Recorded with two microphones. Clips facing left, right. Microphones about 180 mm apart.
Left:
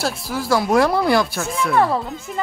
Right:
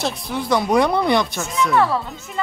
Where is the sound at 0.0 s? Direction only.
5° left (ahead or behind).